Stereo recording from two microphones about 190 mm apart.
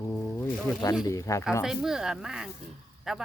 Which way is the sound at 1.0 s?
15° left (ahead or behind).